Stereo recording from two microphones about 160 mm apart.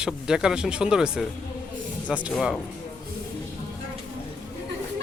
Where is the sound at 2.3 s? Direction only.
Centre (ahead or behind).